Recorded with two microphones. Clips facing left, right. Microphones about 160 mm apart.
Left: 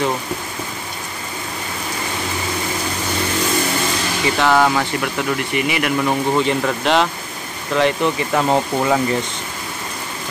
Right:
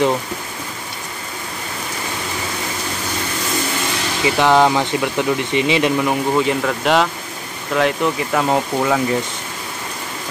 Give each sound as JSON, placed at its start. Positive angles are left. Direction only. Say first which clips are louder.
{"t": 4.4, "sound": "speech", "louder": "right 2 dB", "side_deg": -20}
{"t": 6.0, "sound": "speech", "louder": "even", "side_deg": -5}